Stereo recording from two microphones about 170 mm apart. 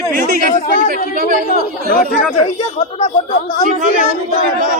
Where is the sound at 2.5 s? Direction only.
40° left (ahead or behind).